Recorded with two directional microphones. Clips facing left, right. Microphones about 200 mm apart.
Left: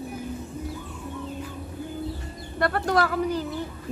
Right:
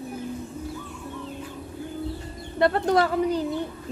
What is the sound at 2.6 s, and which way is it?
Speech, 25° right (ahead or behind).